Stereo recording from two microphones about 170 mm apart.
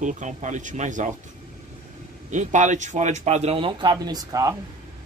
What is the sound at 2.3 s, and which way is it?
Speech, 45° right (ahead or behind).